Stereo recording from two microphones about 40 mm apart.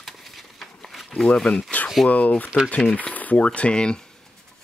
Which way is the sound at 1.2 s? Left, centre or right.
Left.